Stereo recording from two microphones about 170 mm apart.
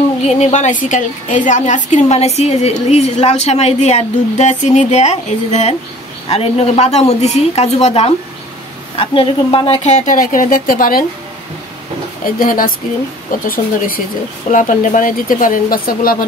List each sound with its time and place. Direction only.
0.3 s a woman's voice: 40° left (ahead or behind); by 11.1 s 55° left (ahead or behind)
12.4 s speech: 55° left (ahead or behind)